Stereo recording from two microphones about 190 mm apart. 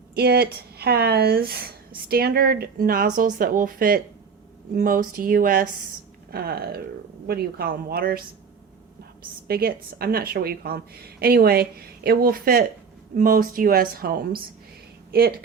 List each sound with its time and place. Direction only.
0.1 s a woman's voice: 55° right (ahead or behind)
9.5 s a woman's voice: 55° right (ahead or behind)